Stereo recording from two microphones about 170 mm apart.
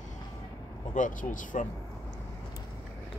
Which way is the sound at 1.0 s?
50° left (ahead or behind).